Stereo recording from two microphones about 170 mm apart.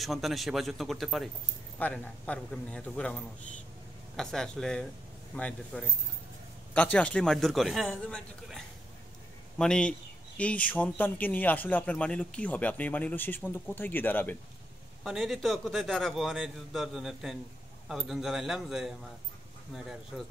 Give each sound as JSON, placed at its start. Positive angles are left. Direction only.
{"t": 0.0, "sound": "a man's voice", "side_deg": 0}
{"t": 4.2, "sound": "a man's voice", "side_deg": 5}
{"t": 9.6, "sound": "speech", "side_deg": 5}
{"t": 15.0, "sound": "a man's voice", "side_deg": 0}